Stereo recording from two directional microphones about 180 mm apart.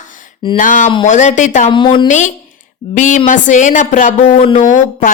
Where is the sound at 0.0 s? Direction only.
45° left (ahead or behind).